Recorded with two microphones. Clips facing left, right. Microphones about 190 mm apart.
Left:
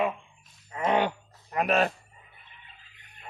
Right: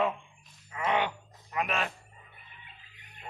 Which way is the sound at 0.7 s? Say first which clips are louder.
Left 4 dB; 40° left (ahead or behind).